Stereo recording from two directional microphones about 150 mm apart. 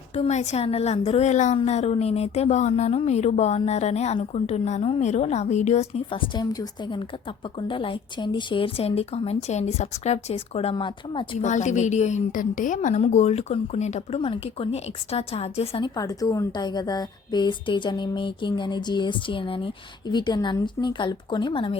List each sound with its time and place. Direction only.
0.2 s a woman's voice: 45° left (ahead or behind)
6.1 s a woman's voice: 30° left (ahead or behind)
11.3 s a woman's voice: 55° left (ahead or behind)
16.0 s a woman's voice: 25° left (ahead or behind)